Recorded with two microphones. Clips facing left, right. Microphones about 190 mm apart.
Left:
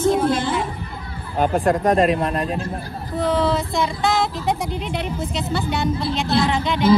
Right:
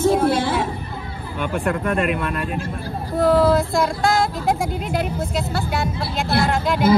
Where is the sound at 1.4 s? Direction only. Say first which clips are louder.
Left 5 dB; 35° left (ahead or behind).